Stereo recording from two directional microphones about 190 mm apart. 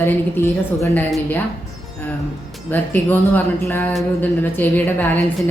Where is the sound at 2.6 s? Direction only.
10° left (ahead or behind).